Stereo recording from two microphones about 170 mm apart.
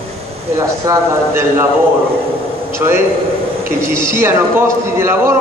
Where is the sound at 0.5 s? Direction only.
15° right (ahead or behind).